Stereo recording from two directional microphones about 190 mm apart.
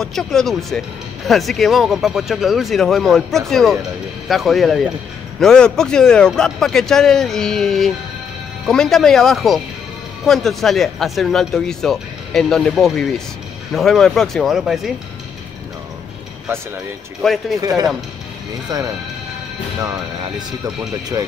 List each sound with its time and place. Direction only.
0.0 s speech: centre (ahead or behind)
17.2 s speech: centre (ahead or behind)
17.6 s speech: 20° right (ahead or behind)
19.8 s speech: 20° right (ahead or behind)